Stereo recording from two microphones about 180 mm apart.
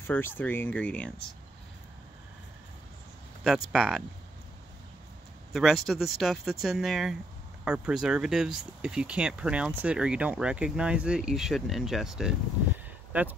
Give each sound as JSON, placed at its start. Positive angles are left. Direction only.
{"t": 0.0, "sound": "speech", "side_deg": 10}
{"t": 3.4, "sound": "speech", "side_deg": 0}
{"t": 5.5, "sound": "speech", "side_deg": 0}